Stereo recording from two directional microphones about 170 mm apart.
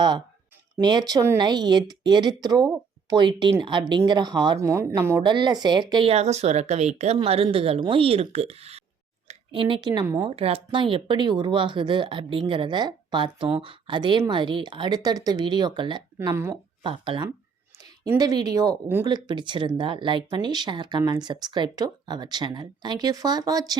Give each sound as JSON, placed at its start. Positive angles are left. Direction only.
{"t": 0.8, "sound": "speech", "side_deg": -25}
{"t": 5.2, "sound": "speech", "side_deg": -25}
{"t": 10.2, "sound": "speech", "side_deg": -35}
{"t": 16.1, "sound": "speech", "side_deg": -15}
{"t": 16.8, "sound": "speech", "side_deg": -30}